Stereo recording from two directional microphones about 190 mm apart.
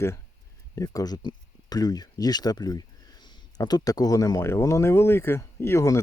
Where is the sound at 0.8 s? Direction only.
20° left (ahead or behind).